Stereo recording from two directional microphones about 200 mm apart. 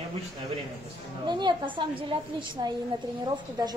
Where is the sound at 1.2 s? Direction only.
20° right (ahead or behind).